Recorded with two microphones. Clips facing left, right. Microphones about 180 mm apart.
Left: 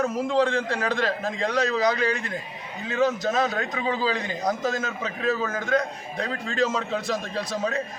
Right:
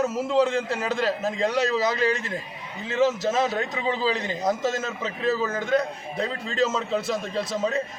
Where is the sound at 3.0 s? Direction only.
5° right (ahead or behind).